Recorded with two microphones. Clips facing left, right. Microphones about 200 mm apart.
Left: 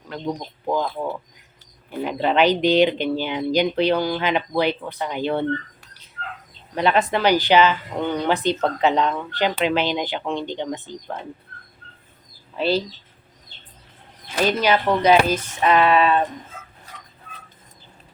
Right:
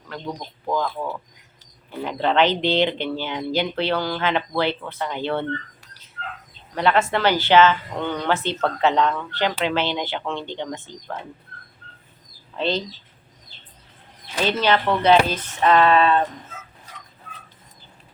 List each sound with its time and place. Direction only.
0.1 s speech: 20° left (ahead or behind)
6.7 s speech: 15° left (ahead or behind)
12.5 s speech: 10° left (ahead or behind)
14.4 s speech: 10° left (ahead or behind)